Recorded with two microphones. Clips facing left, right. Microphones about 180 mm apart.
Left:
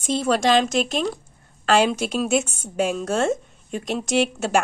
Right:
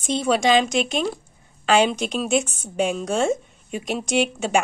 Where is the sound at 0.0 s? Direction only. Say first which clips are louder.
Even; centre (ahead or behind).